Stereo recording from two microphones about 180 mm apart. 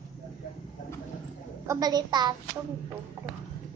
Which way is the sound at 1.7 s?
20° right (ahead or behind).